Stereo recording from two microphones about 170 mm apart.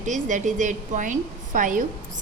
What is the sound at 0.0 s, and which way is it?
A woman's voice, 45° right (ahead or behind).